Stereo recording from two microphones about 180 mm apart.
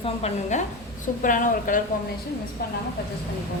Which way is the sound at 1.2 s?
50° left (ahead or behind).